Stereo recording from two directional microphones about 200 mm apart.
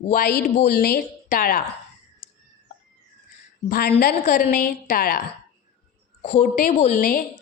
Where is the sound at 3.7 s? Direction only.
50° left (ahead or behind).